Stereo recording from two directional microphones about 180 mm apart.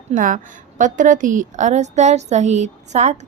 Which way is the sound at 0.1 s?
45° right (ahead or behind).